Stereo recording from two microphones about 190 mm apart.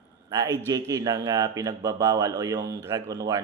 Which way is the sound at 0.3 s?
20° right (ahead or behind).